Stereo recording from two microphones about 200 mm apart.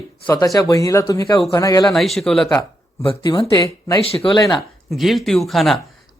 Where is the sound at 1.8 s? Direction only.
Centre (ahead or behind).